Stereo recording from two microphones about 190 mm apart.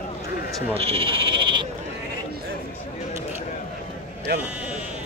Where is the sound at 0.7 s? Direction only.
30° right (ahead or behind).